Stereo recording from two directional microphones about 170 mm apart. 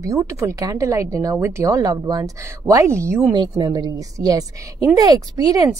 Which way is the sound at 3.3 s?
25° right (ahead or behind).